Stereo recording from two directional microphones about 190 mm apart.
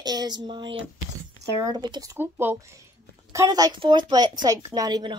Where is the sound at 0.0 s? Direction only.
20° right (ahead or behind).